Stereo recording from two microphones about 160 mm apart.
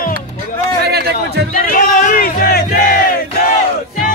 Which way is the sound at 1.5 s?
60° left (ahead or behind).